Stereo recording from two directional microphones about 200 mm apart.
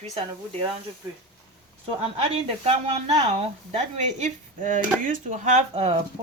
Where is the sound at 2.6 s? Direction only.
30° right (ahead or behind).